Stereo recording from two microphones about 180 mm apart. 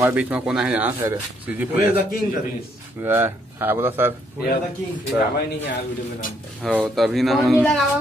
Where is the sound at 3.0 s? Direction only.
10° right (ahead or behind).